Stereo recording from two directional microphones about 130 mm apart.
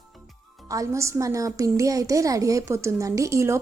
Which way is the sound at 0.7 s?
25° right (ahead or behind).